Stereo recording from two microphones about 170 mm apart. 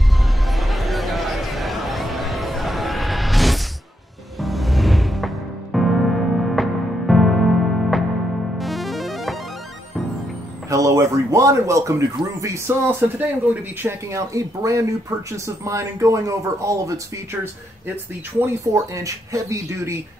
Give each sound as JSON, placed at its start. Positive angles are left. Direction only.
{"t": 0.5, "sound": "a sound", "side_deg": 0}
{"t": 4.4, "sound": "music", "side_deg": 0}
{"t": 10.7, "sound": "speech", "side_deg": -20}
{"t": 18.4, "sound": "speech", "side_deg": -20}